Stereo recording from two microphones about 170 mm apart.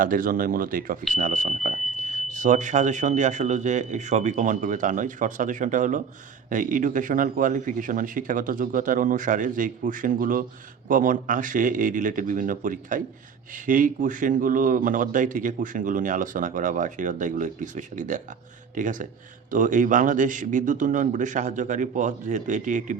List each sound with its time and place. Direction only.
0.0 s speech: 55° right (ahead or behind)